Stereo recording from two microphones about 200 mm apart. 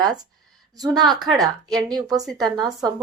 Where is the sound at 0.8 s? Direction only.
20° right (ahead or behind).